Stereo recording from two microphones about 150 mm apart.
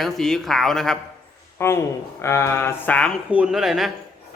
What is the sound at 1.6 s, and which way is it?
A man's voice, 15° left (ahead or behind).